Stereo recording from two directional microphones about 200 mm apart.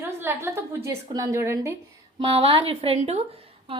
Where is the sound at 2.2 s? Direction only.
25° right (ahead or behind).